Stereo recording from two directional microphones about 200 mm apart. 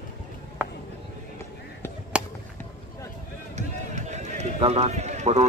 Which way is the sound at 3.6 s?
35° right (ahead or behind).